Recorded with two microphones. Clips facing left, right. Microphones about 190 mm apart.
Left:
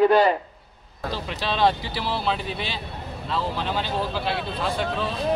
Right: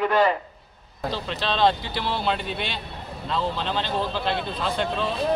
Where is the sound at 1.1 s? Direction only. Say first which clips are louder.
Even; 10° left (ahead or behind).